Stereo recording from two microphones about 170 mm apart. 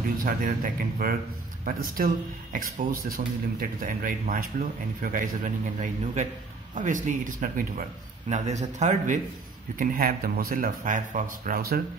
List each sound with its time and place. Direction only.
0.2 s a man's voice: 55° right (ahead or behind)
8.3 s speech: 40° right (ahead or behind)
9.8 s a man's voice: 60° right (ahead or behind)